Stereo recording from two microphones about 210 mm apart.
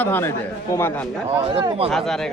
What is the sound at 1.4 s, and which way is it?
Speech, 25° right (ahead or behind).